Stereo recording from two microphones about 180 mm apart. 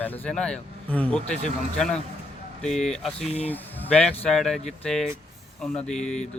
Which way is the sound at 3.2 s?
35° left (ahead or behind).